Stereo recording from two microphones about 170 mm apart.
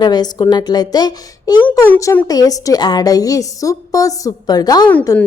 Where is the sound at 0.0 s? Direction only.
25° left (ahead or behind).